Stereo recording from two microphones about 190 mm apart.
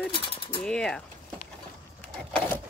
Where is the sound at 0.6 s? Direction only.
5° left (ahead or behind).